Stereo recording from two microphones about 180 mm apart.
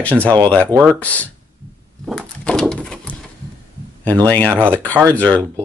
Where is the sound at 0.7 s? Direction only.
15° right (ahead or behind).